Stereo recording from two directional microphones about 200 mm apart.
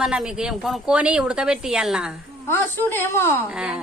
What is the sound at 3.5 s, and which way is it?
Speech, 5° right (ahead or behind).